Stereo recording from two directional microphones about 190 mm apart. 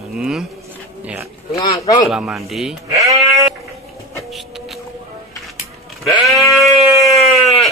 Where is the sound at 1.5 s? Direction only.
20° left (ahead or behind).